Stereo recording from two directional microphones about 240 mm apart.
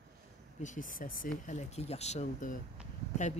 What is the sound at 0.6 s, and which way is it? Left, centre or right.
Speech, left.